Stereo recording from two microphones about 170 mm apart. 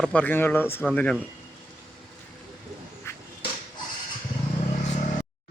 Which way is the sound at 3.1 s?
15° left (ahead or behind).